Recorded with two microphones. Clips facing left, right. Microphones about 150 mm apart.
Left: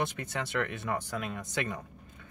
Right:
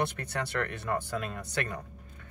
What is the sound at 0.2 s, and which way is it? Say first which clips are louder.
A man's voice: even; 10° left (ahead or behind).